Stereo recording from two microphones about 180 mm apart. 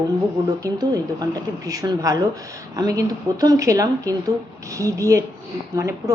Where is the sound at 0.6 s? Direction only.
20° right (ahead or behind).